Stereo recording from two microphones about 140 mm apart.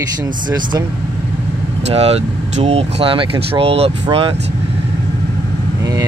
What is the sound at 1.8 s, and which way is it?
Speech, 45° right (ahead or behind).